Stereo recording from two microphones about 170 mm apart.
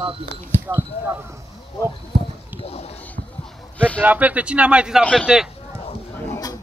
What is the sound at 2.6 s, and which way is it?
Speech, 35° left (ahead or behind).